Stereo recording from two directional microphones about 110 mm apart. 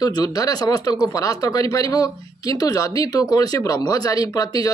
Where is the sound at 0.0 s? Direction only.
35° left (ahead or behind).